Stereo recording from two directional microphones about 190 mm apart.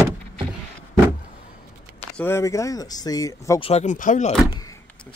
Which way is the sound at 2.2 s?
15° left (ahead or behind).